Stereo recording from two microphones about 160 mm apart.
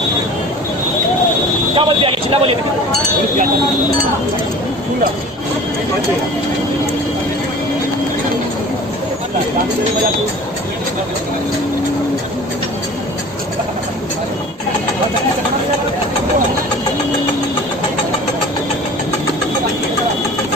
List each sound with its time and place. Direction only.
1.8 s speech: 35° right (ahead or behind)